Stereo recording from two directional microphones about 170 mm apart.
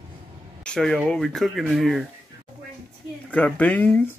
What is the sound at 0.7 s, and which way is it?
Speech, centre (ahead or behind).